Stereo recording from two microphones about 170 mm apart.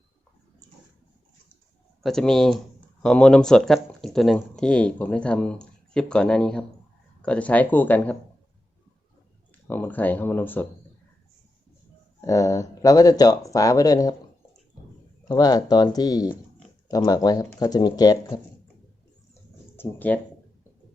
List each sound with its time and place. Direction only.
2.0 s speech: centre (ahead or behind)
9.6 s speech: 10° left (ahead or behind)
12.2 s speech: 15° left (ahead or behind)
15.3 s speech: 20° left (ahead or behind)
19.7 s speech: 10° left (ahead or behind)